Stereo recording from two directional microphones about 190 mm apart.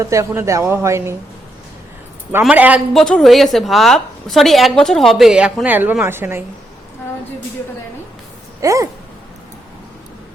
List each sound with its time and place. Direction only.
0.0 s speech: 15° right (ahead or behind)
2.4 s speech: 5° right (ahead or behind)
8.6 s speech: 15° right (ahead or behind)